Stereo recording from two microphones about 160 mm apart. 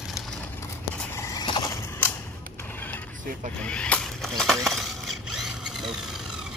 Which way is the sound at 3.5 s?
5° left (ahead or behind).